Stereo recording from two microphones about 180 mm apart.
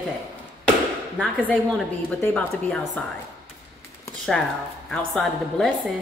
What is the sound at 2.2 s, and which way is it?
Speech, 5° left (ahead or behind).